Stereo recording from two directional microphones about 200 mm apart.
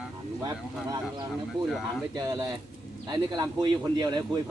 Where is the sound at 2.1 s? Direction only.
20° right (ahead or behind).